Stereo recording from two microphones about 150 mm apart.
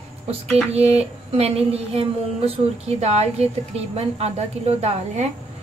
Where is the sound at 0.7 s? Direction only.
45° right (ahead or behind).